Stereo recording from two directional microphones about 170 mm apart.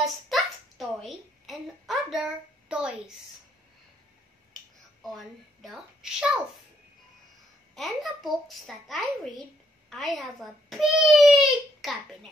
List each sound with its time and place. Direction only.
0.0 s a sound: centre (ahead or behind)
5.0 s a child's voice: centre (ahead or behind)
7.7 s a child's voice: centre (ahead or behind)